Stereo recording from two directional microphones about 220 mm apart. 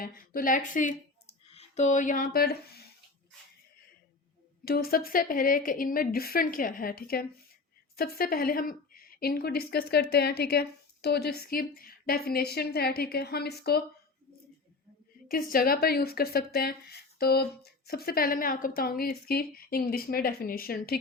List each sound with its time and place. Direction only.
0.0 s speech: 40° left (ahead or behind)
4.6 s a woman's voice: 45° left (ahead or behind)
15.3 s a woman's voice: 40° left (ahead or behind)